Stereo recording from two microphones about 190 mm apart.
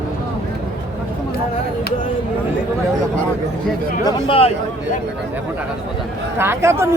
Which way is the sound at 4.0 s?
30° left (ahead or behind).